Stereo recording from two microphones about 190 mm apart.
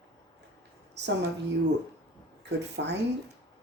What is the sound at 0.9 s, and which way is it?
Speech, 65° right (ahead or behind).